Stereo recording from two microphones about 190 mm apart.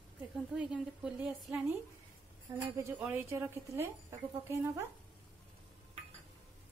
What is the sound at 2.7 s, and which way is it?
A woman's voice, 15° right (ahead or behind).